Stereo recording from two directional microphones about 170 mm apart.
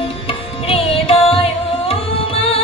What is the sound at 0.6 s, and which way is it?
Carnatic music, 35° left (ahead or behind).